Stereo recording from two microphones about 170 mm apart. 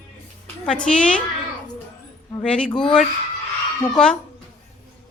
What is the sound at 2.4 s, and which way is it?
Speech, 5° left (ahead or behind).